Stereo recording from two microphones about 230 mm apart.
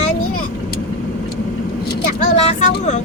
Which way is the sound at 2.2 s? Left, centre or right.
Left.